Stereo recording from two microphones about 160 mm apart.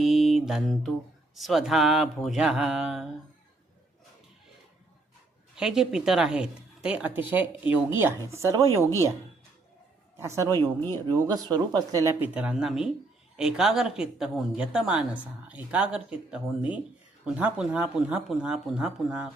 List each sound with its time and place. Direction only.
0.0 s mantra: centre (ahead or behind)
1.4 s speech: centre (ahead or behind)
5.5 s speech: 5° right (ahead or behind)
10.2 s speech: 15° right (ahead or behind)
10.8 s speech: 15° left (ahead or behind)
11.1 s speech: 25° right (ahead or behind)
12.2 s speech: 5° right (ahead or behind)